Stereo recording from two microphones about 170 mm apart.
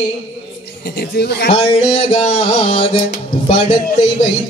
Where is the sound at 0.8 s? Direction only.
75° left (ahead or behind).